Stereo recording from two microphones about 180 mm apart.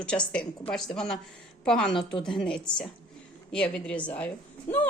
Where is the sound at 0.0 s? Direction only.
5° left (ahead or behind).